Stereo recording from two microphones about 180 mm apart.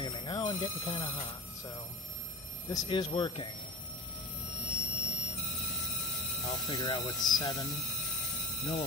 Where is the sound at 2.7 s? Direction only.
20° left (ahead or behind).